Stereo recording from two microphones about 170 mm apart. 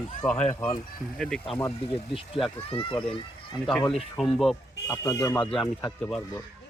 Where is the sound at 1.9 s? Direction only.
30° left (ahead or behind).